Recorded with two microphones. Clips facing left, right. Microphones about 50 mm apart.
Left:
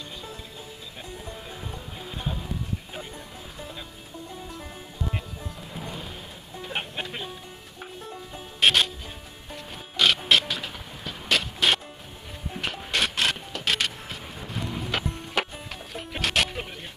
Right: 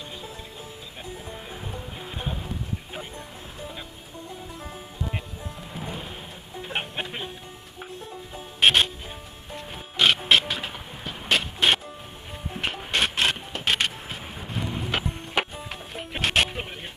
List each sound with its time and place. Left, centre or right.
1.2 s music: centre
5.7 s music: centre
8.5 s music: centre
12.5 s printer: centre
14.4 s music: centre